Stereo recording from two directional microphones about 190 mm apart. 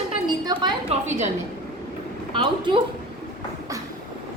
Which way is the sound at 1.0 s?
40° right (ahead or behind).